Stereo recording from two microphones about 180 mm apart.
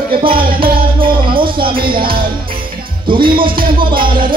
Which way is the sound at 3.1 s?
30° right (ahead or behind).